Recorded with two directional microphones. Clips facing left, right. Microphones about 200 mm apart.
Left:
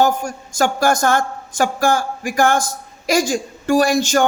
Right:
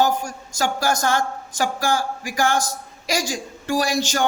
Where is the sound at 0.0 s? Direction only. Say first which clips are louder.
Left 3 dB; 50° left (ahead or behind).